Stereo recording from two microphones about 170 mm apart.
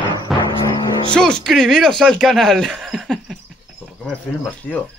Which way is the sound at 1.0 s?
5° left (ahead or behind).